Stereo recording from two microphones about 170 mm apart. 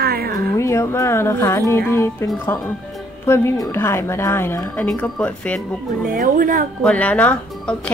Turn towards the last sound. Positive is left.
turn(degrees=10)  # may be behind; listen again after turning